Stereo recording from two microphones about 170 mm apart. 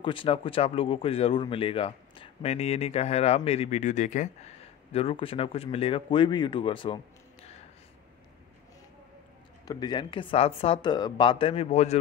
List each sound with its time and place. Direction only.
0.0 s speech: 30° left (ahead or behind)
4.9 s speech: 35° left (ahead or behind)
9.7 s speech: 25° left (ahead or behind); by 12.0 s 40° left (ahead or behind)